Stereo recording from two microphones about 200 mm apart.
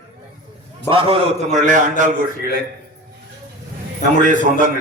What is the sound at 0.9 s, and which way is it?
A man's voice, 25° right (ahead or behind).